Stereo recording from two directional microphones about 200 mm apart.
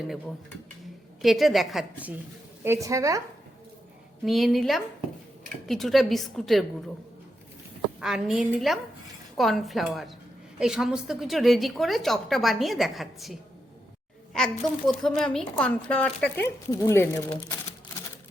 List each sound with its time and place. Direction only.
1.2 s a woman's voice: centre (ahead or behind)
2.6 s speech: 15° right (ahead or behind)
4.3 s a woman's voice: centre (ahead or behind)
8.0 s a woman's voice: 5° right (ahead or behind)
14.3 s a woman's voice: centre (ahead or behind)